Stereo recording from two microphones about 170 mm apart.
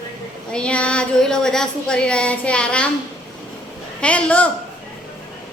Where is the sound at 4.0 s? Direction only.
5° left (ahead or behind).